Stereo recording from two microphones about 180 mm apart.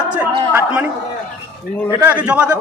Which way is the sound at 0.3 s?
10° right (ahead or behind).